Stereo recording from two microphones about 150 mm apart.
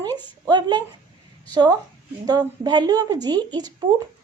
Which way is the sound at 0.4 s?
30° right (ahead or behind).